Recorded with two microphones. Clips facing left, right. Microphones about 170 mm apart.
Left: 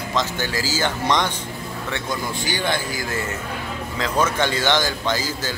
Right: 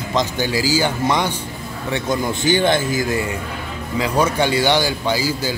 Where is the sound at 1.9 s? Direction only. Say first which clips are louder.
Right 7 dB; 20° right (ahead or behind).